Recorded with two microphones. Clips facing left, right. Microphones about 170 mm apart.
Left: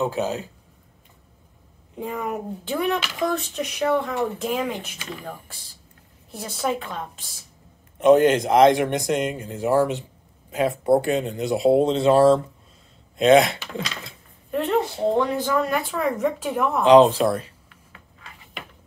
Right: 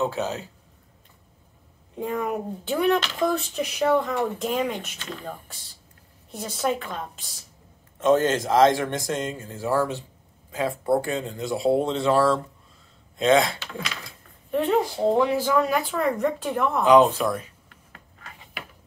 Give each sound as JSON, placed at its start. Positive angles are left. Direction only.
{"t": 0.0, "sound": "speech", "side_deg": 15}
{"t": 2.0, "sound": "speech", "side_deg": 5}
{"t": 3.3, "sound": "speech", "side_deg": -5}
{"t": 8.0, "sound": "speech", "side_deg": 15}
{"t": 14.5, "sound": "a woman's voice", "side_deg": 0}
{"t": 16.8, "sound": "speech", "side_deg": 30}
{"t": 17.6, "sound": "a sound", "side_deg": -45}